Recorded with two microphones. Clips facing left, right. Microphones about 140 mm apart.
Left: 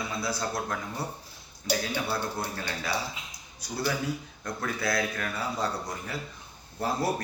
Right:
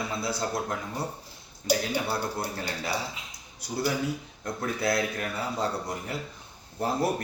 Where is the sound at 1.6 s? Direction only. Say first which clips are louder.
Right 3 dB; 40° right (ahead or behind).